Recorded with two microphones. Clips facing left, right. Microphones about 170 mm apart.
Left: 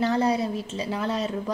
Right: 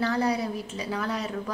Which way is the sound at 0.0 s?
25° left (ahead or behind).